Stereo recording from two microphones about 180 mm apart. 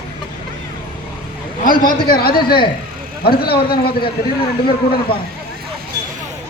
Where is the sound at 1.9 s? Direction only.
55° left (ahead or behind).